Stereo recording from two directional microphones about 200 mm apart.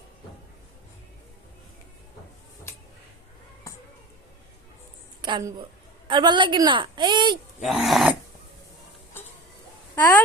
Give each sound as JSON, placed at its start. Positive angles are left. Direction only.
{"t": 5.2, "sound": "a woman's voice", "side_deg": -20}
{"t": 7.6, "sound": "speech", "side_deg": 0}
{"t": 9.9, "sound": "speech", "side_deg": 10}